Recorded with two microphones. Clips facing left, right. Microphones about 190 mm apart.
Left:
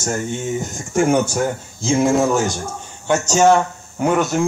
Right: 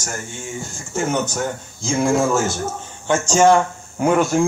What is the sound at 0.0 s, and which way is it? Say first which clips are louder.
Speech: left 8 dB; 20° left (ahead or behind).